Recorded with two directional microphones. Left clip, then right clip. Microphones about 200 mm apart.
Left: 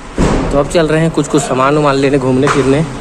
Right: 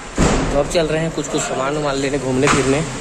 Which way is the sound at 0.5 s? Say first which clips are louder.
Left 8 dB; 15° left (ahead or behind).